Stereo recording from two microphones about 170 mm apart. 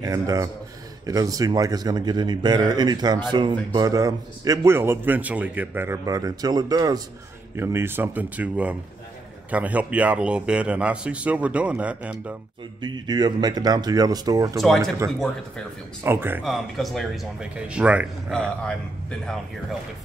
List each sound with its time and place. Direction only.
0.0 s a man's voice: 20° right (ahead or behind)
12.8 s a man's voice: 25° right (ahead or behind)
14.6 s speech: centre (ahead or behind)
16.0 s a man's voice: 15° right (ahead or behind)
16.4 s speech: centre (ahead or behind)
18.3 s speech: 5° left (ahead or behind)